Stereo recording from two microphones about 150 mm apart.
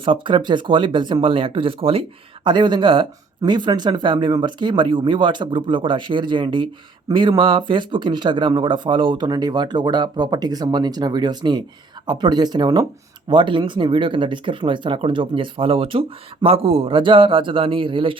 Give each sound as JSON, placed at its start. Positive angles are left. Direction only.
{"t": 0.0, "sound": "speech", "side_deg": -35}